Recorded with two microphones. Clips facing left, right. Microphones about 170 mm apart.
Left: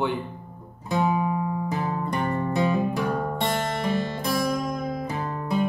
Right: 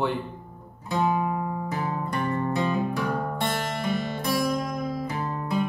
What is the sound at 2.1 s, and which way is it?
Music, 20° left (ahead or behind).